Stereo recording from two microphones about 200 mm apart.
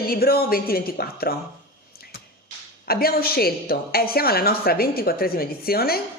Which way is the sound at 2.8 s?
50° left (ahead or behind).